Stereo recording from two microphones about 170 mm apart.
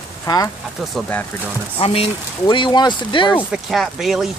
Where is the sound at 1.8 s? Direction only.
35° left (ahead or behind).